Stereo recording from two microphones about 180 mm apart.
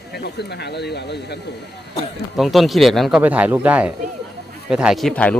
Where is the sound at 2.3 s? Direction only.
Centre (ahead or behind).